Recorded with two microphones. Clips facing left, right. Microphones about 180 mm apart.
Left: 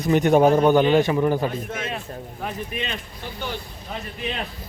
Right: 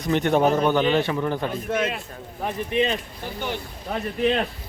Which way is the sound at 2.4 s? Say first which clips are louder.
Right 7 dB; 30° right (ahead or behind).